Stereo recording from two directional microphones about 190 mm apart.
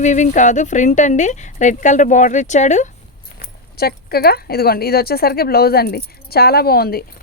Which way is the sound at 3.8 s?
55° left (ahead or behind).